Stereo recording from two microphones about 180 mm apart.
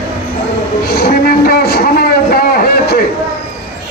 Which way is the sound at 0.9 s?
55° left (ahead or behind).